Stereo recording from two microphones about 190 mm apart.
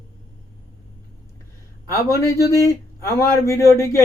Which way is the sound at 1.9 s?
15° left (ahead or behind).